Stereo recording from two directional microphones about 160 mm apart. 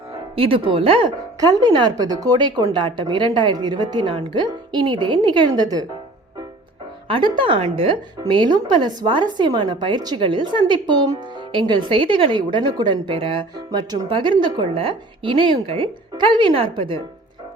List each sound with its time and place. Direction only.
0.3 s speech: 35° right (ahead or behind)
7.1 s a woman's voice: 30° right (ahead or behind)